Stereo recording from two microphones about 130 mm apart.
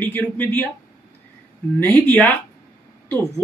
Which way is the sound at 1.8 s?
15° left (ahead or behind).